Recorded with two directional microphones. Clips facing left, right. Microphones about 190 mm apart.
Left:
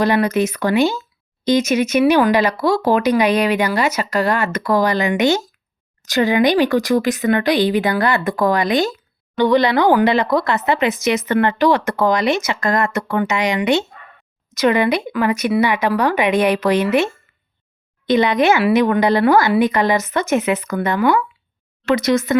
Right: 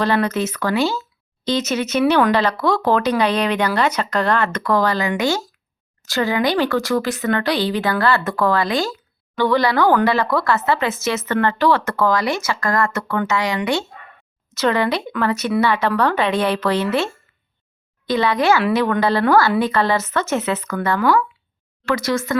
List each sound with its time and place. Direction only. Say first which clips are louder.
0.0 s speech: left 3 dB; 10° left (ahead or behind)